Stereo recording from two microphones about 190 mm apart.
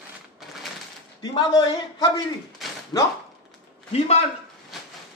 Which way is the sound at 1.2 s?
20° left (ahead or behind).